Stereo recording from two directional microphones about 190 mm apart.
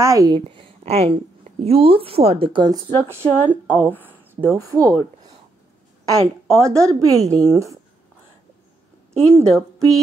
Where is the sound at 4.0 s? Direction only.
10° right (ahead or behind).